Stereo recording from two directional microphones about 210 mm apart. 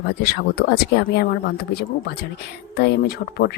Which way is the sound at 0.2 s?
50° left (ahead or behind).